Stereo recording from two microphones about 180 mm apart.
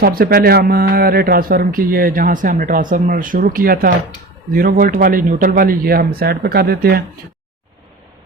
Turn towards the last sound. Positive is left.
turn(degrees=-60)  # may be behind; listen again after turning